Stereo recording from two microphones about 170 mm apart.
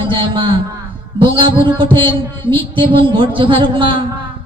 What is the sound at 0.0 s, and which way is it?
A man's voice, 30° right (ahead or behind).